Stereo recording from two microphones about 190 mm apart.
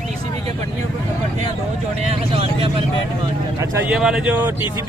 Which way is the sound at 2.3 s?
30° right (ahead or behind).